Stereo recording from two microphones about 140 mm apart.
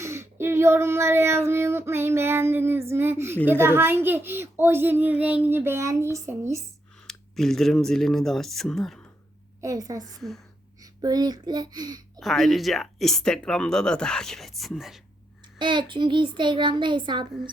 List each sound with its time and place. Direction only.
0.0 s a sound: 20° right (ahead or behind)
1.5 s a child's voice: 20° right (ahead or behind)
7.1 s speech: 5° left (ahead or behind)
9.6 s a woman's voice: 20° right (ahead or behind)
10.2 s speech: centre (ahead or behind)
11.0 s a child's voice: 30° right (ahead or behind)
12.2 s speech: centre (ahead or behind)
15.5 s speech: 35° right (ahead or behind)